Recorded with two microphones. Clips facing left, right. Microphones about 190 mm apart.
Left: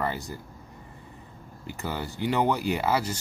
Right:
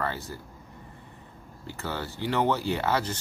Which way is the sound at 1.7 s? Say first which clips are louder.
Left 1 dB; 15° left (ahead or behind).